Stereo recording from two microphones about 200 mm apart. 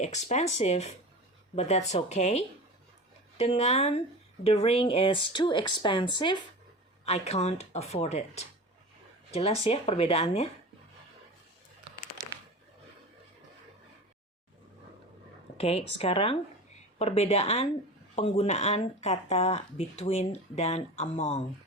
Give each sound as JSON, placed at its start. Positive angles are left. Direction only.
{"t": 0.0, "sound": "speech", "side_deg": 35}
{"t": 15.5, "sound": "speech", "side_deg": 30}